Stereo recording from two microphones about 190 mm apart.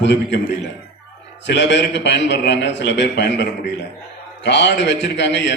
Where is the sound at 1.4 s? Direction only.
70° left (ahead or behind).